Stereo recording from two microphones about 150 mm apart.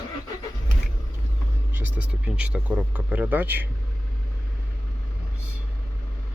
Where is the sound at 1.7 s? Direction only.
10° right (ahead or behind).